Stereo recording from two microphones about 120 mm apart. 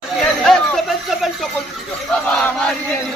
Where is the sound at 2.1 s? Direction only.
10° left (ahead or behind).